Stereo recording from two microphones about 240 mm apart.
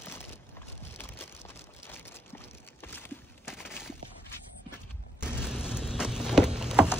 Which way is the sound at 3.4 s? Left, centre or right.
Centre.